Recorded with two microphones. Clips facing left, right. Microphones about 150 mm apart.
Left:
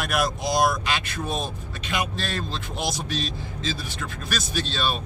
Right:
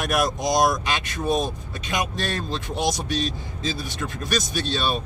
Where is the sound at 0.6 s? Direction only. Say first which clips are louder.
Even; 15° right (ahead or behind).